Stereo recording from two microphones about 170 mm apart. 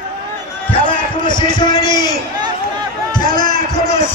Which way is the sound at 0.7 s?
30° left (ahead or behind).